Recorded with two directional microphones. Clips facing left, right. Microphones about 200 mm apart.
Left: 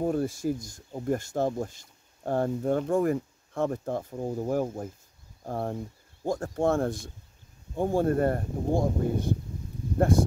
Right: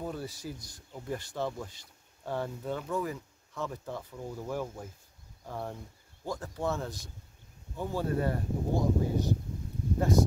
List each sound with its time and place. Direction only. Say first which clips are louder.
0.0 s speech: left 11 dB; 50° left (ahead or behind)